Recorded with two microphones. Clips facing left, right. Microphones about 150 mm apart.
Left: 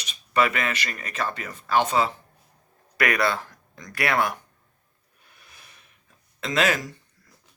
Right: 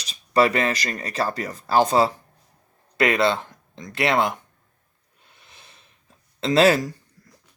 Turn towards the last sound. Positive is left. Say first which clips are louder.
# right 7 dB
turn(degrees=-30)  # may be behind; listen again after turning